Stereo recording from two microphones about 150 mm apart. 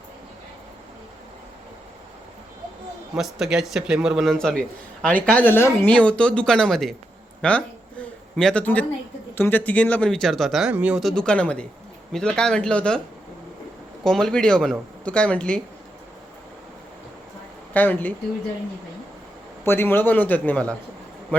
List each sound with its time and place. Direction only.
3.2 s speech: centre (ahead or behind)
7.4 s a sound: 10° left (ahead or behind)
9.3 s speech: 15° left (ahead or behind); by 11.0 s 10° right (ahead or behind)
11.0 s speech: 5° left (ahead or behind)
14.0 s speech: 5° left (ahead or behind)
17.7 s speech: 10° left (ahead or behind)
19.6 s speech: 15° left (ahead or behind)